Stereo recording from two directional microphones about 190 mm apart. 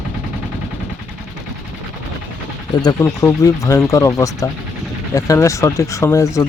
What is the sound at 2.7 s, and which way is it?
Speech, 20° left (ahead or behind).